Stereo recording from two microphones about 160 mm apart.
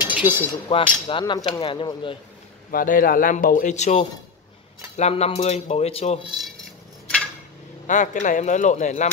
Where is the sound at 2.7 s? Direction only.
65° left (ahead or behind); by 6.2 s 40° left (ahead or behind).